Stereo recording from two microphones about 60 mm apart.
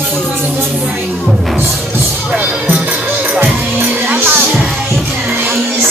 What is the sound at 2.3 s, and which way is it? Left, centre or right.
Music, right.